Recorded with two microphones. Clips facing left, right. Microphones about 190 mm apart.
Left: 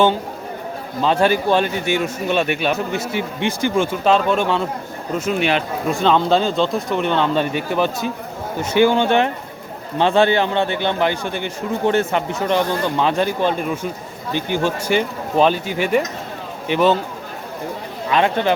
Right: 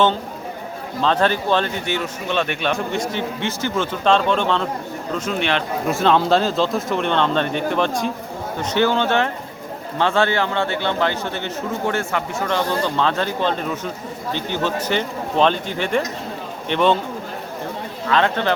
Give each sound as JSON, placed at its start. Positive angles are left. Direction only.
{"t": 1.0, "sound": "a man's voice", "side_deg": 10}
{"t": 5.9, "sound": "a man's voice", "side_deg": 0}
{"t": 18.1, "sound": "a man's voice", "side_deg": 15}